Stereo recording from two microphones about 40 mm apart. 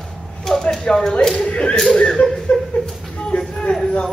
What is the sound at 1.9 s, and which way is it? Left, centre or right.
Chuckle, left.